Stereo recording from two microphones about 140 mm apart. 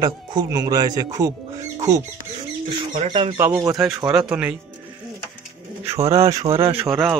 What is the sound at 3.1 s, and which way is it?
Speech, 35° right (ahead or behind).